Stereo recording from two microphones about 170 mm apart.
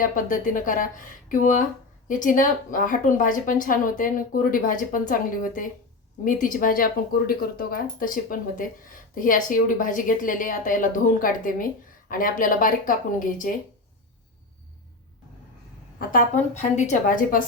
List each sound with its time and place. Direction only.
0.0 s a woman's voice: 50° left (ahead or behind)
16.0 s a woman's voice: 50° left (ahead or behind)